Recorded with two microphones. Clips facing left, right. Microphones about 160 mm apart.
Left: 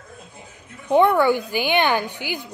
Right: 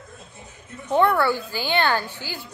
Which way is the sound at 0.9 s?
15° left (ahead or behind).